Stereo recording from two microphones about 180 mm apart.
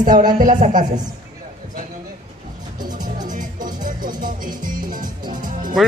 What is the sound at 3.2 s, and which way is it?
Music, 45° right (ahead or behind).